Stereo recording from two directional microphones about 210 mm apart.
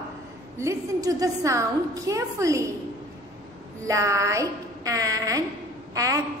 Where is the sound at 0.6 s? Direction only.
15° right (ahead or behind).